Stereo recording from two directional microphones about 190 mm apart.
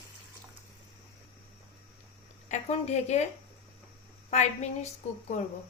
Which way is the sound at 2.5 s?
35° left (ahead or behind).